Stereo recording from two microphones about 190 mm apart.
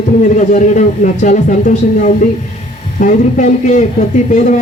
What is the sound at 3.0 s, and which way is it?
Speech, 40° left (ahead or behind).